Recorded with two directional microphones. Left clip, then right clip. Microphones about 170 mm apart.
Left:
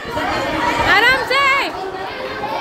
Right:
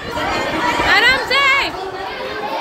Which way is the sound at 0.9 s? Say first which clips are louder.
Even; 30° left (ahead or behind).